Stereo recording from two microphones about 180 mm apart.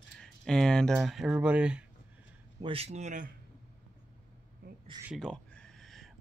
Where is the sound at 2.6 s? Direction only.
30° right (ahead or behind).